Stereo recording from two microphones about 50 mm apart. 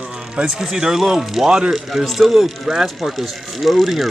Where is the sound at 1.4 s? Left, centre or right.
Centre.